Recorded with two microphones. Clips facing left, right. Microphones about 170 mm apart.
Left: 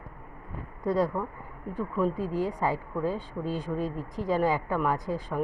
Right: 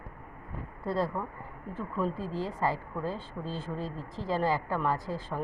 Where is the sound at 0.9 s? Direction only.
15° left (ahead or behind).